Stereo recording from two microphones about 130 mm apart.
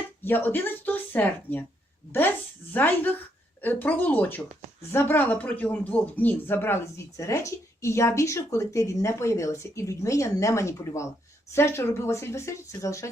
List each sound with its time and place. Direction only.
0.3 s speech: 15° left (ahead or behind)
2.7 s speech: 15° left (ahead or behind)